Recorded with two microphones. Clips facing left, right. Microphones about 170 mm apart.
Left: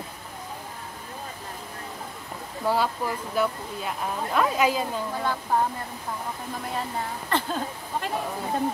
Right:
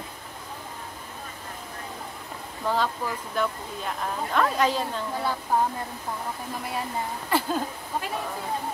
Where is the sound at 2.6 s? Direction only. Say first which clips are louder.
Left 2 dB; 10° left (ahead or behind).